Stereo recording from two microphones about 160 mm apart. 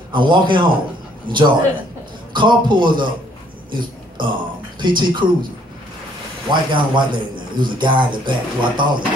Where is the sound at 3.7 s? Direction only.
30° right (ahead or behind).